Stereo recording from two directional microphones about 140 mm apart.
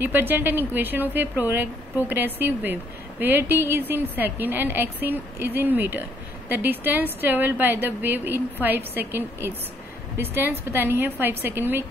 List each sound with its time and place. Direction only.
0.0 s a woman's voice: 15° right (ahead or behind)